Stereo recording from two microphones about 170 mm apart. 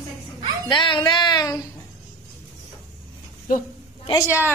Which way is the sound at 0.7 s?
30° left (ahead or behind).